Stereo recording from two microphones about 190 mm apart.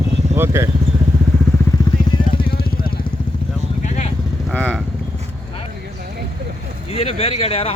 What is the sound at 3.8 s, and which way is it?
Vehicle, 40° left (ahead or behind).